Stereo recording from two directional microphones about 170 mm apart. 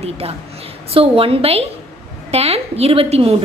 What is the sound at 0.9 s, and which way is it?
A woman's voice, 35° right (ahead or behind).